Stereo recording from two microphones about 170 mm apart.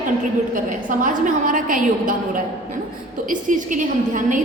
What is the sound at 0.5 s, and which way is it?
A woman's voice, 50° right (ahead or behind).